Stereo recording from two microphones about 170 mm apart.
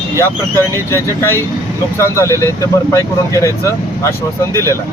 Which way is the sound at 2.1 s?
15° left (ahead or behind).